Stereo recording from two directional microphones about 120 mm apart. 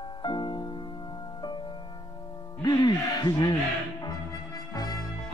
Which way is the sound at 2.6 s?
35° left (ahead or behind).